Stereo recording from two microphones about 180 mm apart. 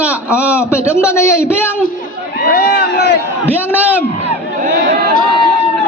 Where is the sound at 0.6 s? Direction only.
15° left (ahead or behind).